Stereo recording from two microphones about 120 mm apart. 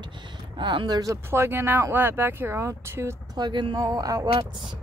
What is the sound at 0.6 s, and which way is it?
Speech, 40° right (ahead or behind).